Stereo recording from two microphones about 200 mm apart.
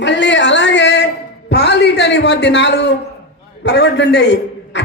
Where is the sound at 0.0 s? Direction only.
65° left (ahead or behind).